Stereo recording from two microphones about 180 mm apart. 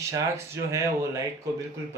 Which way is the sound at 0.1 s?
15° right (ahead or behind).